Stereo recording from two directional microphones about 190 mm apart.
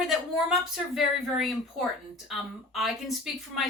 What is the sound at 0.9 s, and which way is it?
Speech, centre (ahead or behind).